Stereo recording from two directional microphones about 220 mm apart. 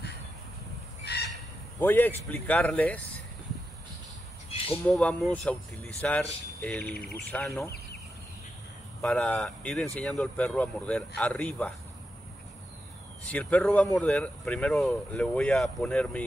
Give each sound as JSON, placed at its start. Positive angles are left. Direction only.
{"t": 1.0, "sound": "fowl", "side_deg": 50}
{"t": 1.8, "sound": "speech", "side_deg": 10}
{"t": 4.8, "sound": "speech", "side_deg": 5}
{"t": 9.0, "sound": "speech", "side_deg": 5}
{"t": 13.2, "sound": "speech", "side_deg": 5}